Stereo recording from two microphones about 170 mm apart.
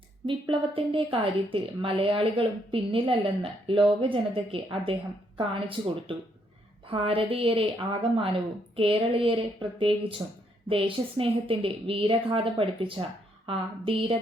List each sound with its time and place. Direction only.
0.3 s a woman's voice: 30° right (ahead or behind)